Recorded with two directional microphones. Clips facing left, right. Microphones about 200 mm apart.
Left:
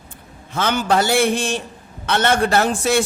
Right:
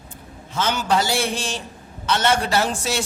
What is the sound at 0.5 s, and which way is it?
A woman's voice, 55° left (ahead or behind).